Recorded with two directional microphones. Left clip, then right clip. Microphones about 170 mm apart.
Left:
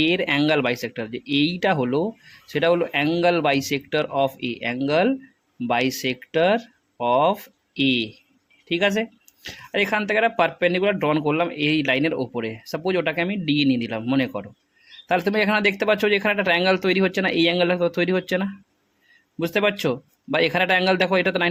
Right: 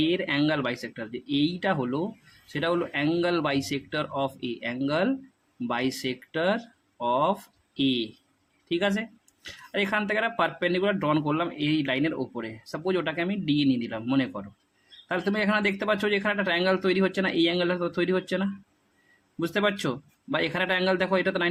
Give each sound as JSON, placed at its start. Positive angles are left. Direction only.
{"t": 0.0, "sound": "speech", "side_deg": 40}